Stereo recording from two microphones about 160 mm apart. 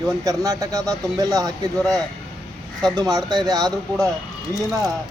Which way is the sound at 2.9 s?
25° right (ahead or behind).